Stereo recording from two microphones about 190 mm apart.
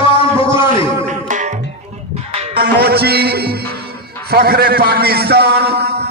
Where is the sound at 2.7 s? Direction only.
55° right (ahead or behind).